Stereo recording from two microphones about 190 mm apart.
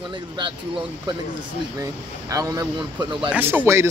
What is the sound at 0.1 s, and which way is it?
A man's voice, 25° right (ahead or behind).